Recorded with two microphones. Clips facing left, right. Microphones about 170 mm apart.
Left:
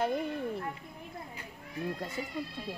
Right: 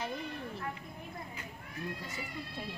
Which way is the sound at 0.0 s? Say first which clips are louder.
Left 8 dB; 55° left (ahead or behind).